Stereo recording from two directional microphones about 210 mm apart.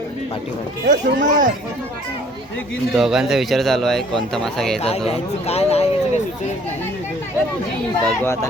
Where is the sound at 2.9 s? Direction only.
Centre (ahead or behind).